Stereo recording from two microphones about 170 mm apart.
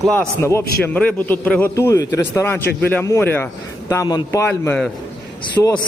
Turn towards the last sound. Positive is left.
turn(degrees=10)  # may be behind; listen again after turning